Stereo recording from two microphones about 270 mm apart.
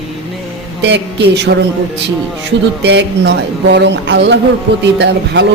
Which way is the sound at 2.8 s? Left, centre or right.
Right.